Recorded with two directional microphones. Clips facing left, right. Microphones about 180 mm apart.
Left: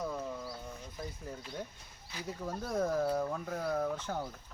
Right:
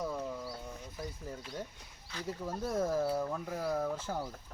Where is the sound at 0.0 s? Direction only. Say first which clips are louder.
Right 1 dB; 5° right (ahead or behind).